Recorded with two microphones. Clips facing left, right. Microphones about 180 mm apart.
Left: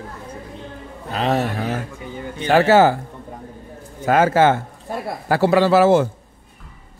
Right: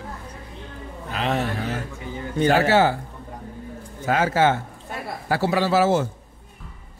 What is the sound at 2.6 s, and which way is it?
Speech, 45° left (ahead or behind).